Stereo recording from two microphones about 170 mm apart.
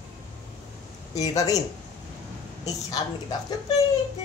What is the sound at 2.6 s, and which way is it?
Speech, 20° left (ahead or behind).